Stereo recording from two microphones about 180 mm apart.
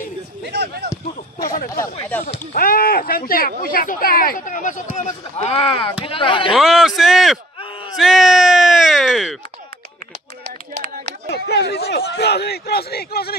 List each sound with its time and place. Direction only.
0.5 s speech: 70° right (ahead or behind)
2.2 s speech: 45° left (ahead or behind); by 6.5 s 25° left (ahead or behind)
6.5 s a man's voice: centre (ahead or behind)
11.2 s speech: 70° left (ahead or behind)